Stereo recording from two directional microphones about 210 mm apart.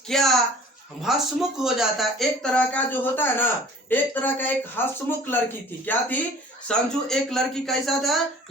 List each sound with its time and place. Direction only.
0.1 s speech: centre (ahead or behind)